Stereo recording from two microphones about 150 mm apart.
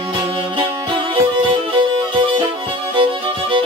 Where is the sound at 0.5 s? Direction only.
30° right (ahead or behind).